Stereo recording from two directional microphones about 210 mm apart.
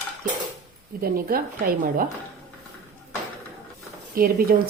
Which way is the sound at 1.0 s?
45° right (ahead or behind).